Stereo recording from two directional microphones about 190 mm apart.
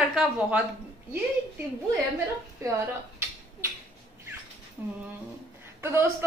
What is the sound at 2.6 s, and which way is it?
Speech, 15° right (ahead or behind).